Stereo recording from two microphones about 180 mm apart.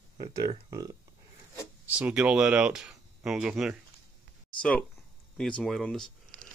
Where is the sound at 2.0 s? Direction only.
5° right (ahead or behind).